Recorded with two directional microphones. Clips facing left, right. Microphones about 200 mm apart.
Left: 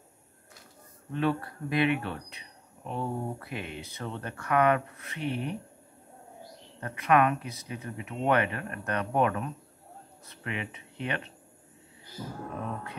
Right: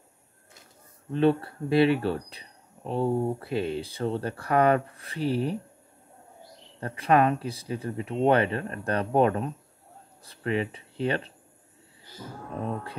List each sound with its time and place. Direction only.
1.1 s speech: 30° right (ahead or behind)
6.8 s speech: 30° right (ahead or behind)